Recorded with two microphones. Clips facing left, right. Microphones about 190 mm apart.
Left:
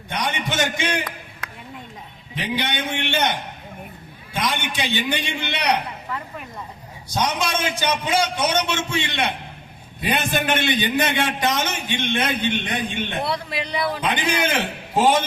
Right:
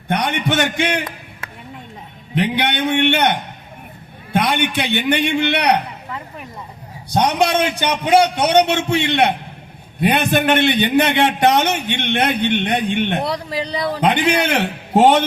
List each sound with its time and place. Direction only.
0.1 s a man's voice: 60° right (ahead or behind)
2.3 s a man's voice: 60° right (ahead or behind)
7.1 s a man's voice: 60° right (ahead or behind)
13.2 s speech: 35° right (ahead or behind)
14.0 s a man's voice: 65° right (ahead or behind)